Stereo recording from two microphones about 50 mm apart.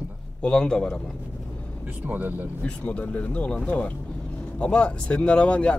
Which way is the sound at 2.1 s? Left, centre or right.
Right.